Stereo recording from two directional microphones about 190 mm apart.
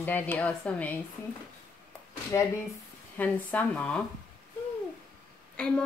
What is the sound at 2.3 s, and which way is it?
Speech, 15° left (ahead or behind).